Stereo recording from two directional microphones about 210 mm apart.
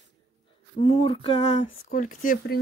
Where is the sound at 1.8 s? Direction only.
40° left (ahead or behind).